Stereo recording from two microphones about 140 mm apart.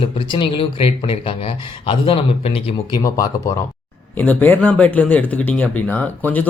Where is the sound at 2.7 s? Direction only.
25° left (ahead or behind).